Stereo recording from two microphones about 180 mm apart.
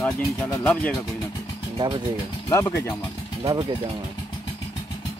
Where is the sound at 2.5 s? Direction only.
15° left (ahead or behind).